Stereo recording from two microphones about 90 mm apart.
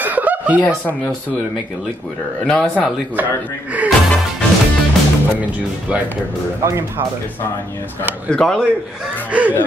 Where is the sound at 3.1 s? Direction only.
15° right (ahead or behind).